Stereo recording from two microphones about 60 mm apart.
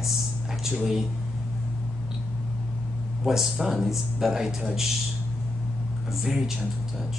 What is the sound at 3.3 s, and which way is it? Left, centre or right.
A woman's voice, centre.